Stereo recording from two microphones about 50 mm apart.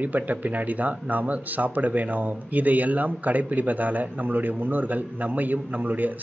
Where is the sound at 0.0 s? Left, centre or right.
Right.